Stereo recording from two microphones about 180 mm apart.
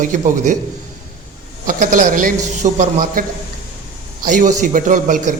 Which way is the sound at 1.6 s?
50° right (ahead or behind).